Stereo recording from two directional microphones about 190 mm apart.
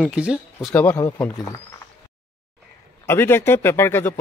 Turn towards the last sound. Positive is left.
turn(degrees=10)  # may be behind; listen again after turning